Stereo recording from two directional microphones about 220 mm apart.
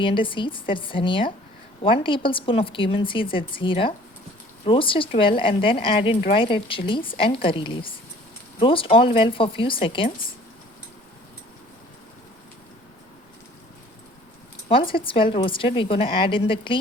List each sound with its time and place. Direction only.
0.0 s a woman's voice: 25° left (ahead or behind)
14.8 s a woman's voice: 25° left (ahead or behind)